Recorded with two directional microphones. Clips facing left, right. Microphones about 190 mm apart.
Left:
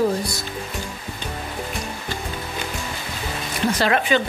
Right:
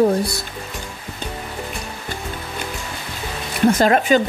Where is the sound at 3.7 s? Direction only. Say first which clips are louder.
Right 5 dB; 45° right (ahead or behind).